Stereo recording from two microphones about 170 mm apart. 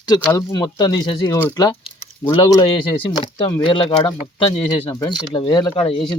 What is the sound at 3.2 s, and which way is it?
Speech, 30° left (ahead or behind).